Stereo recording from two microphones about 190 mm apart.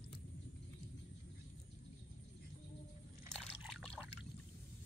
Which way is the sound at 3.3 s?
5° left (ahead or behind).